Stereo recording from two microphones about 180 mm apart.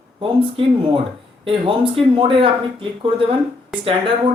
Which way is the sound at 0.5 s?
30° right (ahead or behind).